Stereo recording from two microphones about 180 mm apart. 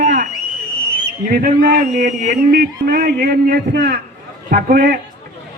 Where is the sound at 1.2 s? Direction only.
55° right (ahead or behind).